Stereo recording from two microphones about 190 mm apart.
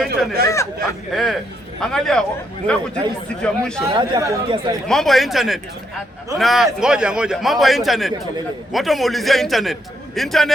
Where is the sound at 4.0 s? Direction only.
20° right (ahead or behind).